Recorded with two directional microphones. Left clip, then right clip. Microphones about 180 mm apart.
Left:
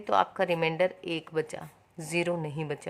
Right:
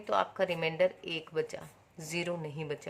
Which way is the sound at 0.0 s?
35° left (ahead or behind).